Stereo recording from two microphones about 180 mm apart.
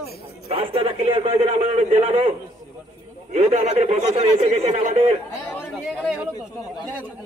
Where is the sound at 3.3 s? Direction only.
40° right (ahead or behind).